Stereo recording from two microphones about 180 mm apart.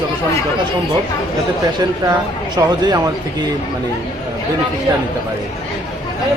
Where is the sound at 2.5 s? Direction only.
20° right (ahead or behind).